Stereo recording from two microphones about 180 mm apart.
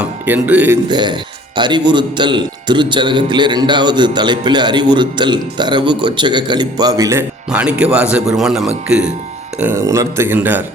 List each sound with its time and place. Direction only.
0.0 s speech: 10° right (ahead or behind)
0.9 s speech: 25° right (ahead or behind)